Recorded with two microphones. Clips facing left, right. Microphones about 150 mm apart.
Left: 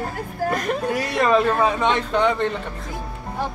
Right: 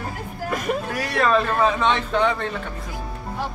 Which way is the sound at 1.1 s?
15° left (ahead or behind).